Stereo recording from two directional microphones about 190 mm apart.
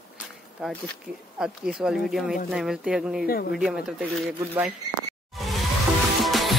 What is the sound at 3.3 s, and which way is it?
Speech, 50° left (ahead or behind).